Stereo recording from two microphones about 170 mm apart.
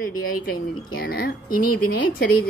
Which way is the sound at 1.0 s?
65° left (ahead or behind).